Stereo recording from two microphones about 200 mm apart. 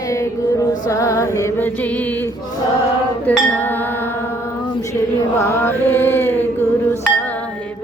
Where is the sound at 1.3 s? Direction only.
10° left (ahead or behind).